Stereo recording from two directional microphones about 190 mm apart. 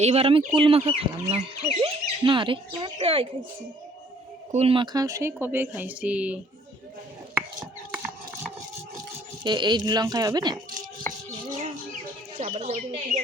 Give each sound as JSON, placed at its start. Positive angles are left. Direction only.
{"t": 0.0, "sound": "speech", "side_deg": -30}
{"t": 4.5, "sound": "speech", "side_deg": -30}
{"t": 9.4, "sound": "speech", "side_deg": -25}
{"t": 11.4, "sound": "bird", "side_deg": -40}
{"t": 12.4, "sound": "speech", "side_deg": -35}